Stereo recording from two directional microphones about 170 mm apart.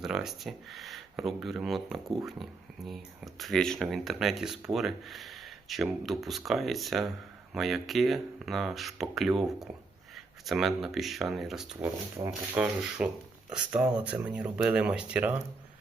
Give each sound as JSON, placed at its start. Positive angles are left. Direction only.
{"t": 0.0, "sound": "speech", "side_deg": -5}
{"t": 12.2, "sound": "speech", "side_deg": -25}
{"t": 12.5, "sound": "speech", "side_deg": -5}